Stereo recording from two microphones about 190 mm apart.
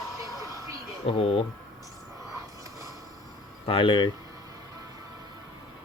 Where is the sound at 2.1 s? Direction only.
20° right (ahead or behind).